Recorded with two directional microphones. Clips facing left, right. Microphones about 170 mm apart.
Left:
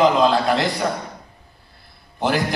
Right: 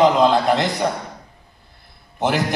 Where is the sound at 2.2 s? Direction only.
20° right (ahead or behind).